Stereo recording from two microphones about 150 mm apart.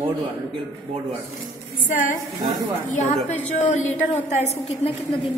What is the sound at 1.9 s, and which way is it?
Speech, 60° left (ahead or behind).